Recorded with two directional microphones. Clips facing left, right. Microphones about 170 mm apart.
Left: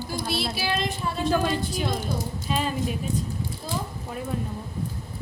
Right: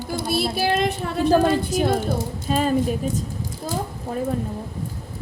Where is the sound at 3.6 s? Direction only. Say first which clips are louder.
Right 7 dB; 40° right (ahead or behind).